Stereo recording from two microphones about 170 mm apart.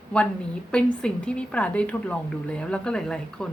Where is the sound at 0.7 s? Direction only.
5° left (ahead or behind).